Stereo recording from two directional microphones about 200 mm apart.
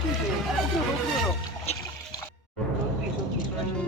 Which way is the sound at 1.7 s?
30° left (ahead or behind).